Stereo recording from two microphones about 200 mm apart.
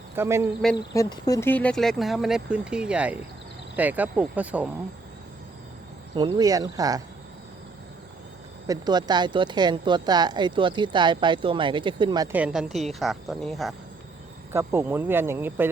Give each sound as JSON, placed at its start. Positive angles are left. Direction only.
{"t": 0.2, "sound": "speech", "side_deg": -15}
{"t": 0.6, "sound": "speech", "side_deg": 0}
{"t": 0.9, "sound": "speech", "side_deg": 20}
{"t": 6.1, "sound": "speech", "side_deg": -20}
{"t": 8.6, "sound": "speech", "side_deg": -20}
{"t": 12.3, "sound": "speech", "side_deg": -5}
{"t": 14.5, "sound": "speech", "side_deg": -10}